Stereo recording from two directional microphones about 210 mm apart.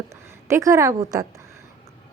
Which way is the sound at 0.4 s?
15° right (ahead or behind).